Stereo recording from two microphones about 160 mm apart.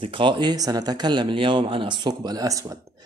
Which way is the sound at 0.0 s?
30° right (ahead or behind).